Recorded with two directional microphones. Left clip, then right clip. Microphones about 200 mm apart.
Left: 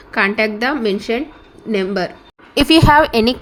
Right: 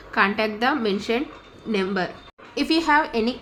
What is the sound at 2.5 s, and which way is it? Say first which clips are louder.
Speech: left 9 dB; 40° left (ahead or behind).